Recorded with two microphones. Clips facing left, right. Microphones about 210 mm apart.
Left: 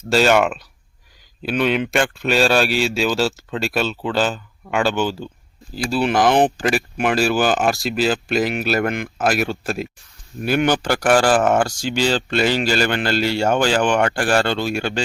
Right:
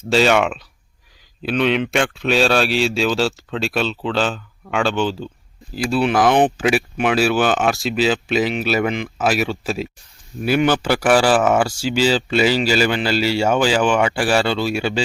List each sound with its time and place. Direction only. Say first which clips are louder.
0.1 s speech: even; centre (ahead or behind)